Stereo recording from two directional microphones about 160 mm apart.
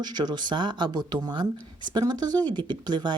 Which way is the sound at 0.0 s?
25° right (ahead or behind).